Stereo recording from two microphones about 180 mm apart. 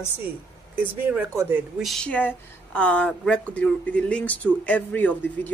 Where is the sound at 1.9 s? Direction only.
5° left (ahead or behind).